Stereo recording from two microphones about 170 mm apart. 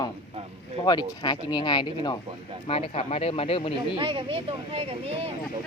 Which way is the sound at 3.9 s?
30° right (ahead or behind).